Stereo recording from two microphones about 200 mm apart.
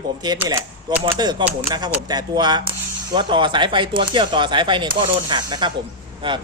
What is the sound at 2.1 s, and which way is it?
Speech, 20° right (ahead or behind).